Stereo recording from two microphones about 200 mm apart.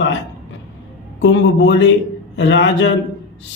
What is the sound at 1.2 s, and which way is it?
A man's voice, 65° left (ahead or behind).